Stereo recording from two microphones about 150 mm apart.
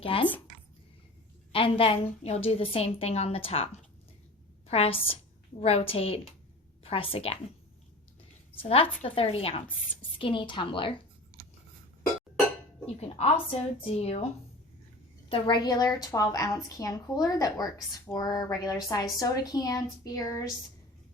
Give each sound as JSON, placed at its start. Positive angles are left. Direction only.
{"t": 0.0, "sound": "speech", "side_deg": 35}
{"t": 1.5, "sound": "a woman's voice", "side_deg": 40}
{"t": 8.6, "sound": "a woman's voice", "side_deg": 45}
{"t": 12.8, "sound": "a woman's voice", "side_deg": 45}
{"t": 15.3, "sound": "a woman's voice", "side_deg": 35}